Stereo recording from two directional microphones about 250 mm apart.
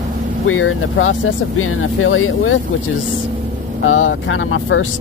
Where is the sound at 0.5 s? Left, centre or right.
Left.